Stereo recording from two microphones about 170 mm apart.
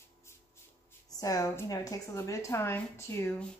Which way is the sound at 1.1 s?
20° left (ahead or behind).